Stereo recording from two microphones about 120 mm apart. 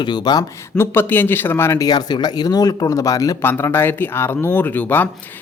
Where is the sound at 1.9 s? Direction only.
35° left (ahead or behind).